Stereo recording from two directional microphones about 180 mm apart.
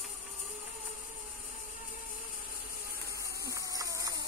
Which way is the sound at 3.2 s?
20° right (ahead or behind).